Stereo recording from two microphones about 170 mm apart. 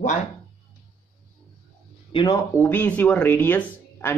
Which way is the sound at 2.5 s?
10° left (ahead or behind).